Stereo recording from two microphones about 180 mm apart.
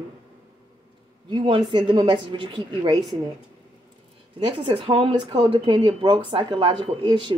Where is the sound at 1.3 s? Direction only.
30° right (ahead or behind).